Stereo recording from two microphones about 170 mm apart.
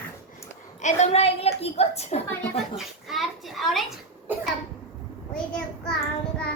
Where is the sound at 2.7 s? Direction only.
Centre (ahead or behind).